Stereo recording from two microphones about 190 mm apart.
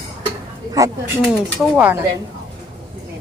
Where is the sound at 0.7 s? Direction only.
15° right (ahead or behind).